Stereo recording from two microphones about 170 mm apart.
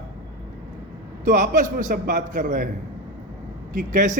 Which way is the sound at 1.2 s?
45° right (ahead or behind).